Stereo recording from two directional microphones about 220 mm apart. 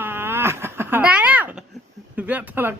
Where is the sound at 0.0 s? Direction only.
10° right (ahead or behind).